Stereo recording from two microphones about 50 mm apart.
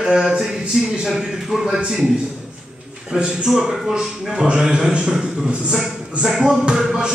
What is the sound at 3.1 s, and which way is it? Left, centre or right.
A man's voice, centre.